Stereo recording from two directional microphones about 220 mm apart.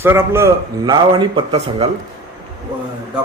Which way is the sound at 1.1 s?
20° right (ahead or behind).